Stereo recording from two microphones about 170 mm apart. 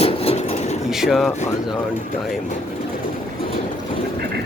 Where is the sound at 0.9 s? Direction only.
Centre (ahead or behind).